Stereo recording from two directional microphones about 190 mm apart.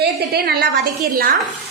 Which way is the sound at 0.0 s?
55° right (ahead or behind).